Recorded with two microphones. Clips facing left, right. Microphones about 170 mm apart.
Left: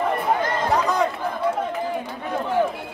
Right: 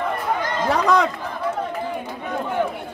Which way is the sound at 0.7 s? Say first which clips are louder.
Right 4 dB; 90° right.